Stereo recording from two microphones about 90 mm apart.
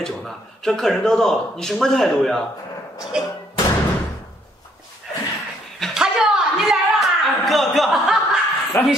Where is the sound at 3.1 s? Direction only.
10° right (ahead or behind).